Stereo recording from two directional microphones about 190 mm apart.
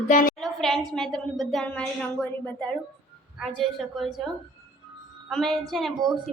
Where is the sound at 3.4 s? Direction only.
Centre (ahead or behind).